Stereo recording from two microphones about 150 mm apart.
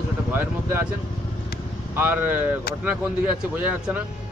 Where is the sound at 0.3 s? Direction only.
15° right (ahead or behind).